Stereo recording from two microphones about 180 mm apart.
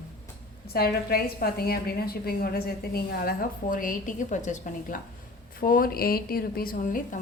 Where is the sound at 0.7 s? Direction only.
60° left (ahead or behind).